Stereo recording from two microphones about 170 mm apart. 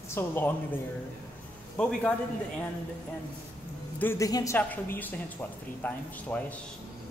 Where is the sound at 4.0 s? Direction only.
15° left (ahead or behind).